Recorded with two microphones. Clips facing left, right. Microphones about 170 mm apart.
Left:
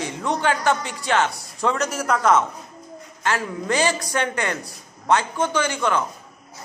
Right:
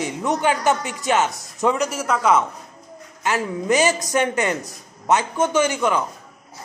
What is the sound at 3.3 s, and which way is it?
A man's voice, 15° right (ahead or behind).